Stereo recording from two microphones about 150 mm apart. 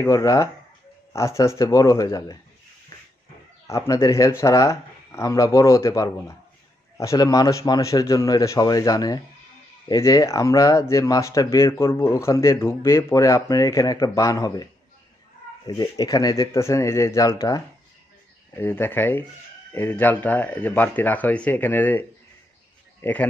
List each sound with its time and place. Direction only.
0.0 s speech: 20° left (ahead or behind)
3.6 s speech: 20° left (ahead or behind)
23.0 s speech: 15° left (ahead or behind)